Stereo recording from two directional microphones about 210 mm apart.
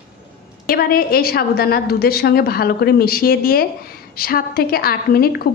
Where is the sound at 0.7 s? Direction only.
45° left (ahead or behind).